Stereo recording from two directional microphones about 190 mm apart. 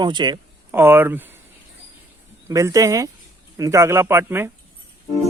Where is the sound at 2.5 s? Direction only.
15° right (ahead or behind).